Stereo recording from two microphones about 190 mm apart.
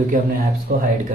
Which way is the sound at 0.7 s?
50° right (ahead or behind).